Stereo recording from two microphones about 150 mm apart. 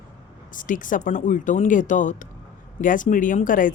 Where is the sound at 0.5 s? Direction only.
60° left (ahead or behind).